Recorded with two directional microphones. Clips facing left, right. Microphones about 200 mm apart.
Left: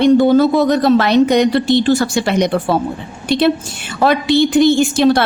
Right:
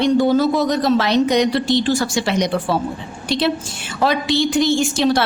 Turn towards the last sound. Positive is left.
turn(degrees=60)  # may be behind; listen again after turning